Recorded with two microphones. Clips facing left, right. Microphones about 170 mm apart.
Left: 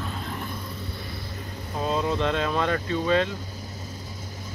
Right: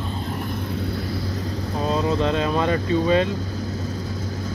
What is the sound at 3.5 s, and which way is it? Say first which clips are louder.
Vehicle: right 10 dB; 75° right (ahead or behind).